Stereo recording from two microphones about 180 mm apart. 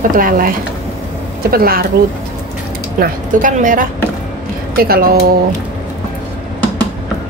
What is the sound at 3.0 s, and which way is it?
Speech, 50° right (ahead or behind).